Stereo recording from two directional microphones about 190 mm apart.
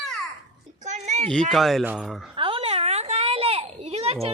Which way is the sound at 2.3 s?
25° right (ahead or behind).